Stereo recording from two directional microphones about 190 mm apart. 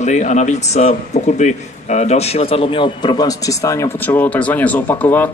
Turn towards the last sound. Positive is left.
turn(degrees=10)  # may be behind; listen again after turning